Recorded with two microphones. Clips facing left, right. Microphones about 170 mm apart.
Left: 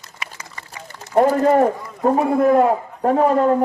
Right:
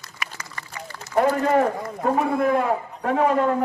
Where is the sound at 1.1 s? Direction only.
40° left (ahead or behind).